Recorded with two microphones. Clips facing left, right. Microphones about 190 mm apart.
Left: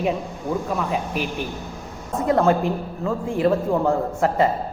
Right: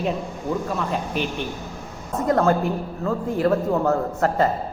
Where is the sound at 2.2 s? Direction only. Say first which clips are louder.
Left 1 dB; 15° left (ahead or behind).